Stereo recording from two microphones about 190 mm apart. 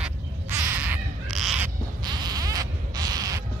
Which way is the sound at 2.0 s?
20° right (ahead or behind).